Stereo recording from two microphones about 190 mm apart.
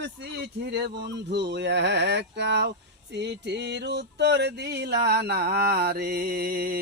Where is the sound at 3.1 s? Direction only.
65° right (ahead or behind).